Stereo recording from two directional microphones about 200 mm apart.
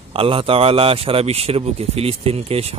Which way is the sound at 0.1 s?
25° right (ahead or behind).